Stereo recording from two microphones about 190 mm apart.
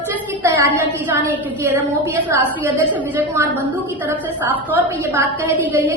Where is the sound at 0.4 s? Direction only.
15° right (ahead or behind).